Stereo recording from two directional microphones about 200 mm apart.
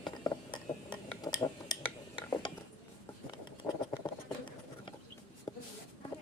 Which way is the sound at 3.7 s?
10° left (ahead or behind).